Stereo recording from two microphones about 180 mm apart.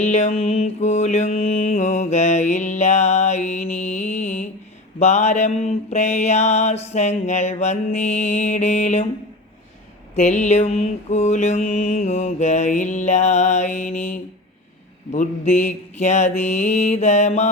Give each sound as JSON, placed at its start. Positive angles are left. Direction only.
{"t": 0.0, "sound": "mantra", "side_deg": 40}
{"t": 10.2, "sound": "mantra", "side_deg": 40}